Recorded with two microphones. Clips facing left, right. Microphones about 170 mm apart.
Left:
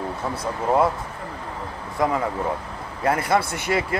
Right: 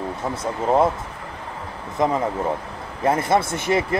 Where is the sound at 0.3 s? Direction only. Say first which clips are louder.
Right 2 dB; 25° right (ahead or behind).